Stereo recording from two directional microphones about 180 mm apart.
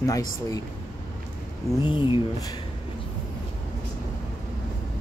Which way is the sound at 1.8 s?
25° left (ahead or behind).